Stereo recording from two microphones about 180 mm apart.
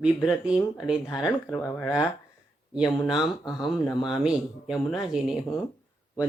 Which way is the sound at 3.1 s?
25° left (ahead or behind).